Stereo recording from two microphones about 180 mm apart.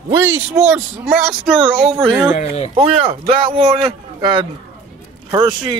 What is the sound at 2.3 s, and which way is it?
Speech, 35° left (ahead or behind).